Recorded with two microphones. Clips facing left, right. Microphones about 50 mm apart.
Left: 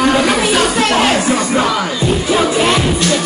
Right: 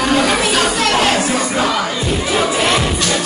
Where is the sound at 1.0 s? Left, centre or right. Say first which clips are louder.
Left 2 dB; centre.